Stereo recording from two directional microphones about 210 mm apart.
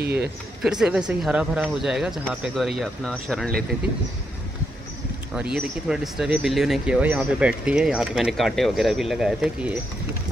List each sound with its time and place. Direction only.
0.0 s speech: 50° right (ahead or behind)
0.6 s speech: 5° right (ahead or behind)
5.3 s speech: 5° right (ahead or behind)